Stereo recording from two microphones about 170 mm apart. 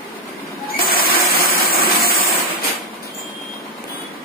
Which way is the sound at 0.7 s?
60° left (ahead or behind).